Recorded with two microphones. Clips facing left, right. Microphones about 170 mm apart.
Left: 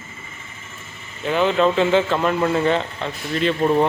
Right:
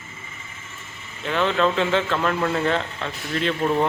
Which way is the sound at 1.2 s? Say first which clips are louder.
Left 3 dB; 5° left (ahead or behind).